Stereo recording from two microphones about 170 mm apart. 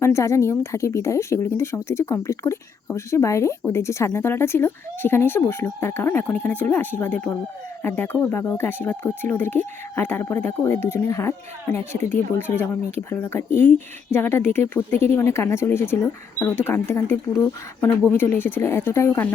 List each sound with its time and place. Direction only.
0.0 s speech: 15° left (ahead or behind)